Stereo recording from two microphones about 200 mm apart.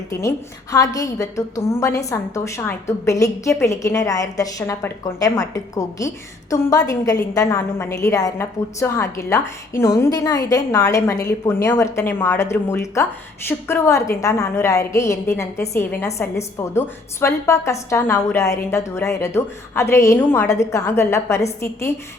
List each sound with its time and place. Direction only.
0.1 s a woman's voice: 15° left (ahead or behind)